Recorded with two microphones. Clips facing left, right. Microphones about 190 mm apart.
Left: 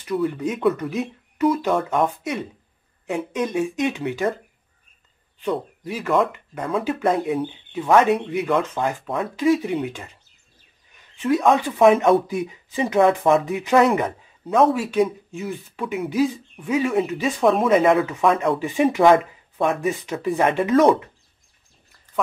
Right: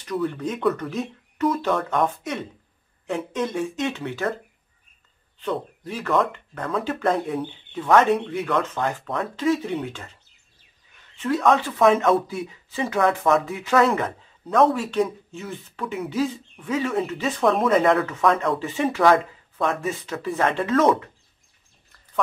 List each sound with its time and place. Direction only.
0.0 s speech: 5° left (ahead or behind)
5.4 s speech: 10° left (ahead or behind)
11.1 s speech: 15° left (ahead or behind)
18.6 s speech: 15° left (ahead or behind)